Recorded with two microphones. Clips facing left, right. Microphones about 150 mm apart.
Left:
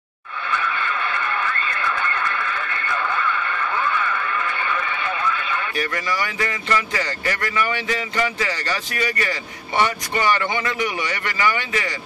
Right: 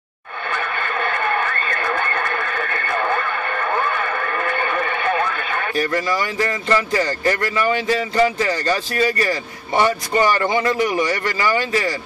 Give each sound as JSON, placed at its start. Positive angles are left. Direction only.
{"t": 0.5, "sound": "radio", "side_deg": -55}
{"t": 5.8, "sound": "speech", "side_deg": -30}